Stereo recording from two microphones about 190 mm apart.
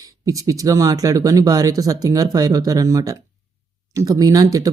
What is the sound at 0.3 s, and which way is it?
Speech, 15° right (ahead or behind).